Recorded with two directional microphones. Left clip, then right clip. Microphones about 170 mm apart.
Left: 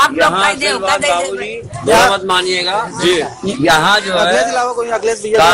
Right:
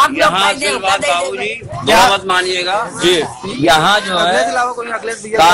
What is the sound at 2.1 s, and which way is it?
Speech, 75° left (ahead or behind).